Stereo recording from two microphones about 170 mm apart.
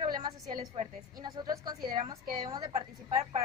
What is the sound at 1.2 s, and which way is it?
Speech, 25° right (ahead or behind).